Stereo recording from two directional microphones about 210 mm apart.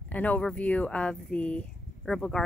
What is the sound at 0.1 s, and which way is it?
Speech, 5° left (ahead or behind).